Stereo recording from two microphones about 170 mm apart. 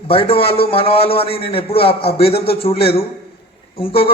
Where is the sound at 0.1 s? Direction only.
35° left (ahead or behind).